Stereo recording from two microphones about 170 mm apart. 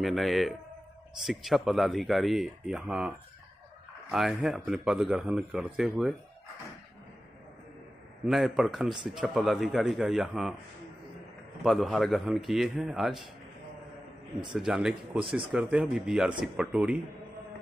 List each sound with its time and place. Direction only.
0.0 s speech: centre (ahead or behind)
8.3 s speech: centre (ahead or behind)
11.6 s speech: centre (ahead or behind)
14.5 s speech: 5° right (ahead or behind)
15.1 s speech: 30° right (ahead or behind)
15.5 s speech: 5° right (ahead or behind)